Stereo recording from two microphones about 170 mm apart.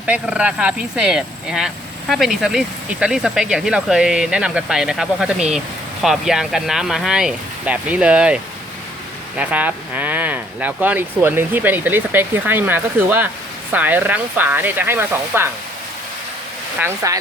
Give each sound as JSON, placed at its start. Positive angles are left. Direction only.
{"t": 0.0, "sound": "speech", "side_deg": -5}
{"t": 9.4, "sound": "speech", "side_deg": -10}
{"t": 16.8, "sound": "speech", "side_deg": -20}